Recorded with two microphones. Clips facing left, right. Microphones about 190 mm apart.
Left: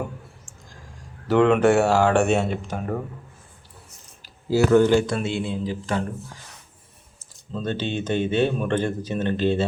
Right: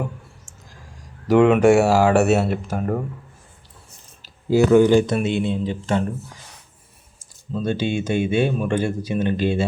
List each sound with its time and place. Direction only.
1.3 s speech: 10° right (ahead or behind)
4.2 s speech: 15° right (ahead or behind)
7.5 s speech: 10° right (ahead or behind)